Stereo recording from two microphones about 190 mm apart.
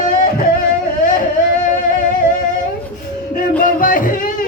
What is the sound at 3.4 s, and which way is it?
Music, 45° left (ahead or behind).